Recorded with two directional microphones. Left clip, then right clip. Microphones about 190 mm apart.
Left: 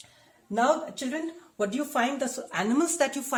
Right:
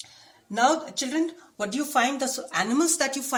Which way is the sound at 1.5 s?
35° left (ahead or behind).